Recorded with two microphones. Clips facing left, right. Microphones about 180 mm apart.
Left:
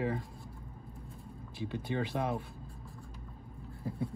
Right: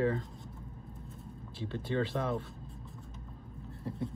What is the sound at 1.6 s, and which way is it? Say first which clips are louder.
Speech: right 2 dB; 15° left (ahead or behind).